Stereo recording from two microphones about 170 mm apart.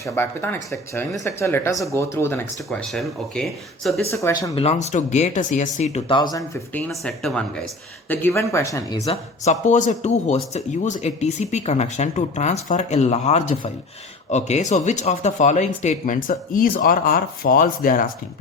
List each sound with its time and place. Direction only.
0.0 s speech: 15° left (ahead or behind)
2.6 s speech: centre (ahead or behind)
4.1 s speech: 15° left (ahead or behind)
4.5 s speech: 40° left (ahead or behind)
6.1 s speech: 25° left (ahead or behind)
6.7 s speech: 5° left (ahead or behind)
8.1 s speech: 15° left (ahead or behind)
9.4 s speech: 45° left (ahead or behind)